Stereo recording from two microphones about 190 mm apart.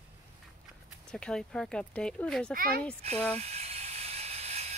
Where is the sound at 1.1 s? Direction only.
5° left (ahead or behind).